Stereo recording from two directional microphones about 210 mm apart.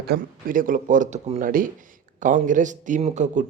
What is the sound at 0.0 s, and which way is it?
A man's voice, 45° right (ahead or behind).